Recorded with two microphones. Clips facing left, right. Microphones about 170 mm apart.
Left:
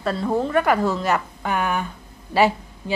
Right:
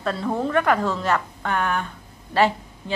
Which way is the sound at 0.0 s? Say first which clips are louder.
Left 2 dB; centre (ahead or behind).